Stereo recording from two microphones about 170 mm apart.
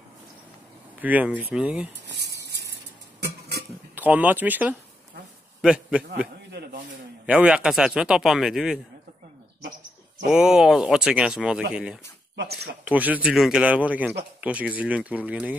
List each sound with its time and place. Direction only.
1.0 s speech: 10° right (ahead or behind)
2.4 s a sound: 75° right (ahead or behind)
3.9 s a man's voice: 10° right (ahead or behind)
7.2 s a man's voice: 5° right (ahead or behind)
10.3 s a man's voice: 5° right (ahead or behind)